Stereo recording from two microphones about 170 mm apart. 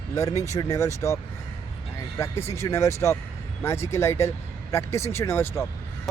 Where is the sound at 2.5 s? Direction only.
15° left (ahead or behind).